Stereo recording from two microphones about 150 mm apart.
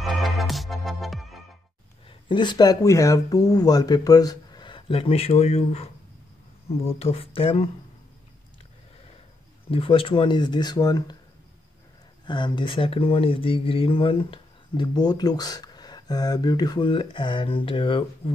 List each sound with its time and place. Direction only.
0.0 s music: centre (ahead or behind)
2.0 s speech: 30° left (ahead or behind)
9.7 s speech: 35° left (ahead or behind)
12.3 s speech: 30° left (ahead or behind)